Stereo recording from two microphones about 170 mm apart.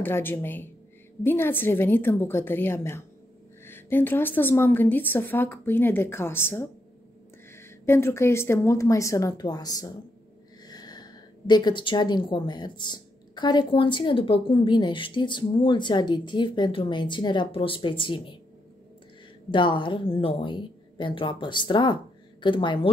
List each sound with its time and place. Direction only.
0.0 s a woman's voice: 10° left (ahead or behind); by 18.3 s 30° left (ahead or behind)
19.5 s a woman's voice: 30° left (ahead or behind)